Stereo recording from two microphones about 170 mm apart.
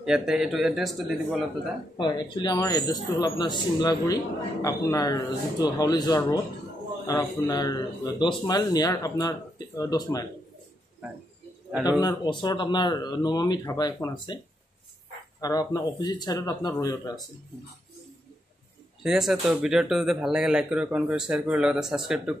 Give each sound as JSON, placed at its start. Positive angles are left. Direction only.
{"t": 0.0, "sound": "speech", "side_deg": -5}
{"t": 2.0, "sound": "speech", "side_deg": 25}
{"t": 12.0, "sound": "speech", "side_deg": 25}
{"t": 15.4, "sound": "speech", "side_deg": 20}
{"t": 19.0, "sound": "speech", "side_deg": 0}